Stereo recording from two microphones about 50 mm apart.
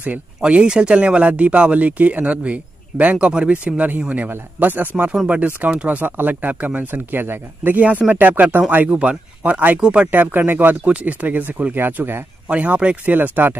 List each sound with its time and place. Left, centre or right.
0.4 s speech: centre
4.3 s speech: right
6.9 s speech: right
8.8 s speech: right
9.8 s speech: centre
10.1 s speech: right
10.8 s speech: right
11.8 s speech: right
12.4 s speech: right
13.1 s speech: right